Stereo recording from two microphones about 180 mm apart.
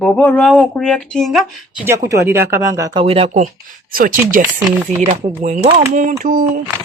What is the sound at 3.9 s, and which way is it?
Speech, 50° right (ahead or behind).